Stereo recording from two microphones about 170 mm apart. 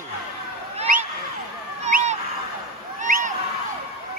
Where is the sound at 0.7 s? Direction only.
50° right (ahead or behind).